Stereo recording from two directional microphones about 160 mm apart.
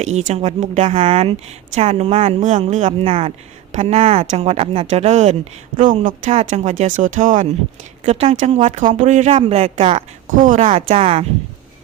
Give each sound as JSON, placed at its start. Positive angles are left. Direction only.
{"t": 0.0, "sound": "speech", "side_deg": -45}
{"t": 8.0, "sound": "speech", "side_deg": -40}
{"t": 10.2, "sound": "speech", "side_deg": -55}
{"t": 10.6, "sound": "speech", "side_deg": -40}